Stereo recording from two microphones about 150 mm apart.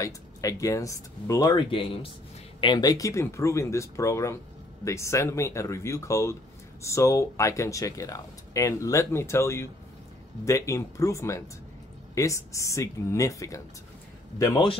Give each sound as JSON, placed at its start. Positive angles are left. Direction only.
{"t": 0.0, "sound": "speech", "side_deg": 20}